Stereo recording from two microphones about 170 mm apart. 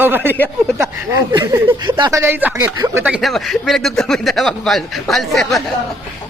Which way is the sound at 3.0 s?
5° right (ahead or behind).